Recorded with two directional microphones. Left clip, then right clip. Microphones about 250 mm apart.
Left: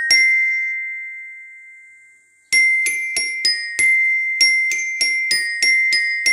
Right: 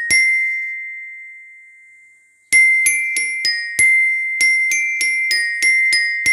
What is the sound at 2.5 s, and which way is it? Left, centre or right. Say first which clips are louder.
Glockenspiel: right 3 dB; centre.